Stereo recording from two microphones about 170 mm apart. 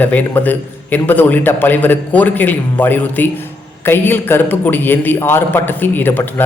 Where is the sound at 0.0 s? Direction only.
10° left (ahead or behind).